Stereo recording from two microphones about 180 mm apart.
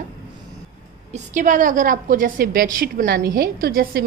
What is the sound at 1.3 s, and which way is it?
A woman's voice, 45° right (ahead or behind).